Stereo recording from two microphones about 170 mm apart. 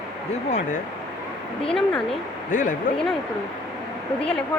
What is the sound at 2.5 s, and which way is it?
Speech, 50° left (ahead or behind).